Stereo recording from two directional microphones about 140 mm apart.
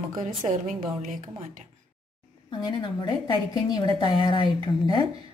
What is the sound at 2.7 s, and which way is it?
Speech, 35° left (ahead or behind).